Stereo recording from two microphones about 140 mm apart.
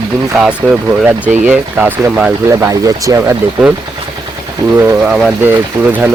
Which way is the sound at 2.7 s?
25° right (ahead or behind).